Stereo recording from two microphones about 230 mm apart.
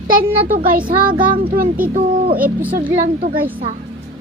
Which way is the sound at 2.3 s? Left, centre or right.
Centre.